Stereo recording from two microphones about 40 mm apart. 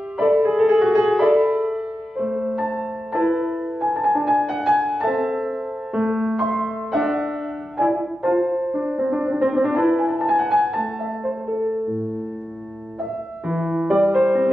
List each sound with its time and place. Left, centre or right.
0.2 s music: right
1.4 s music: right
13.5 s music: centre